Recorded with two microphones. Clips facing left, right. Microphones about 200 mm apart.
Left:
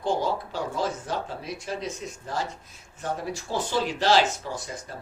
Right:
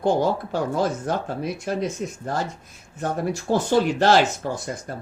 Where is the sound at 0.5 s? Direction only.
55° right (ahead or behind).